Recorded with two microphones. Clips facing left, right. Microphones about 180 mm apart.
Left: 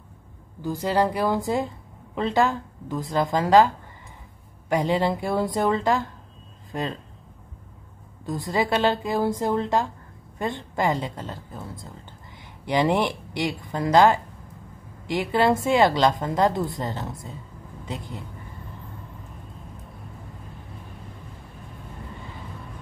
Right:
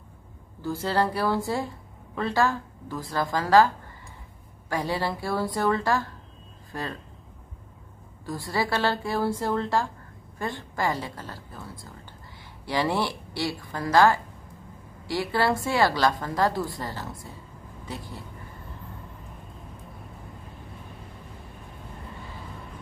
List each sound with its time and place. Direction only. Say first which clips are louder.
0.6 s a woman's voice: left 3 dB; 15° left (ahead or behind)
8.3 s speech: left 4 dB; 20° left (ahead or behind)